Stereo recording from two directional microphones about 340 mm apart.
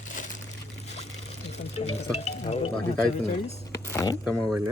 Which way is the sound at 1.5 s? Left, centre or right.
Centre.